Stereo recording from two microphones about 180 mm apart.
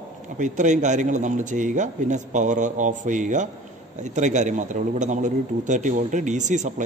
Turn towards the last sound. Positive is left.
turn(degrees=-40)  # may be behind; listen again after turning